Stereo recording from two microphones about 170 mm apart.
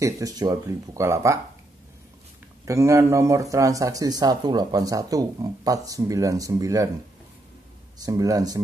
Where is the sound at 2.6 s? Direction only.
15° right (ahead or behind).